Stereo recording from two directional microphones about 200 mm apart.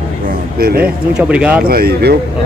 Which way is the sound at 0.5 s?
45° right (ahead or behind).